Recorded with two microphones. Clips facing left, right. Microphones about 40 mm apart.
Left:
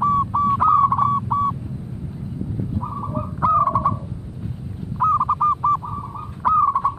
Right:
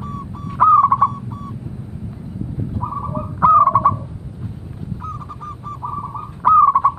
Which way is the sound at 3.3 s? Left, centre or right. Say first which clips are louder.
Right 6 dB; right.